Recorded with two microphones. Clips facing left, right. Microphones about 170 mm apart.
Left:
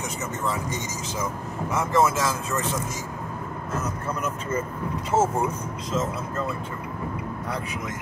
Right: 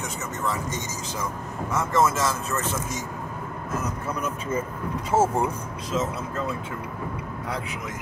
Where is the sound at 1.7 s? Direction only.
15° left (ahead or behind).